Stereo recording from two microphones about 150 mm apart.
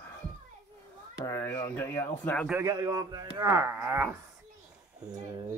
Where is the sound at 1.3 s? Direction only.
15° left (ahead or behind).